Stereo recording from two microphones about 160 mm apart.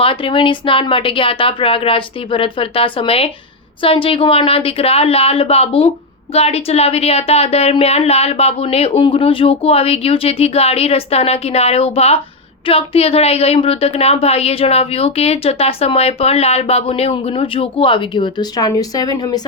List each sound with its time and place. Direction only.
0.0 s a woman's voice: 35° left (ahead or behind)